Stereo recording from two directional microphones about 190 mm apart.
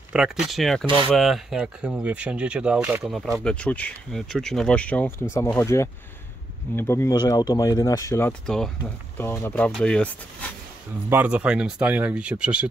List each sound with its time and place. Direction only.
0.1 s speech: 5° right (ahead or behind)
0.8 s speech: 25° right (ahead or behind)
1.1 s speech: centre (ahead or behind)
9.2 s speech: 15° left (ahead or behind)
11.1 s speech: 10° right (ahead or behind)